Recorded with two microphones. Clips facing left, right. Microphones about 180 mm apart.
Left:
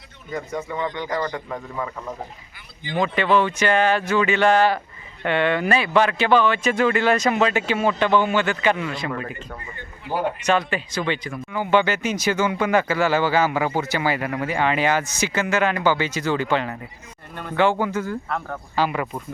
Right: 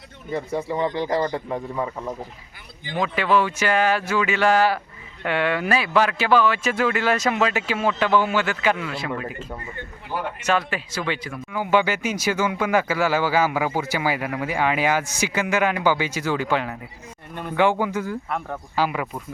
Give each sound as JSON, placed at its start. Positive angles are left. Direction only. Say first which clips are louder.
{"t": 0.3, "sound": "speech", "louder": "right 3 dB", "side_deg": -30}
{"t": 2.9, "sound": "speech", "louder": "left 1 dB", "side_deg": -5}